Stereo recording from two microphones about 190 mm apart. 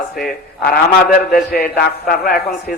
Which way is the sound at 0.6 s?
50° left (ahead or behind).